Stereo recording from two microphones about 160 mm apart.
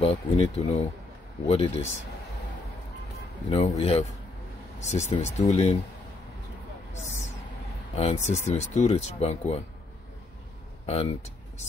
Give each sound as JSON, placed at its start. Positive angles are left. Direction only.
{"t": 0.0, "sound": "speech", "side_deg": 40}
{"t": 3.4, "sound": "speech", "side_deg": 40}
{"t": 7.9, "sound": "speech", "side_deg": 40}
{"t": 10.9, "sound": "speech", "side_deg": 40}